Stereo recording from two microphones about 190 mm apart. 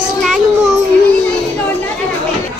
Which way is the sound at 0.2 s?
Centre (ahead or behind).